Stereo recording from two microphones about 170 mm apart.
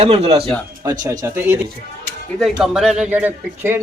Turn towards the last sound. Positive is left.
turn(degrees=-10)  # may be behind; listen again after turning